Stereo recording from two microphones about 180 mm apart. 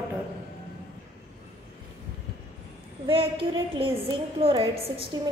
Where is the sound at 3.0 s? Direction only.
30° right (ahead or behind).